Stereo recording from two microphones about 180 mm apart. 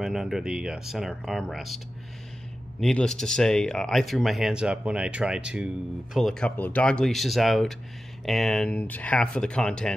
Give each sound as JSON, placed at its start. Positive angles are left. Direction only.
{"t": 0.0, "sound": "speech", "side_deg": 0}
{"t": 2.8, "sound": "speech", "side_deg": 5}